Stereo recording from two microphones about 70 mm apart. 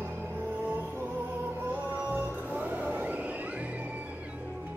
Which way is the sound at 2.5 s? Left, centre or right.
Right.